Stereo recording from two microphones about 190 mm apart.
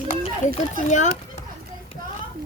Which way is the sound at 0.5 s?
40° left (ahead or behind).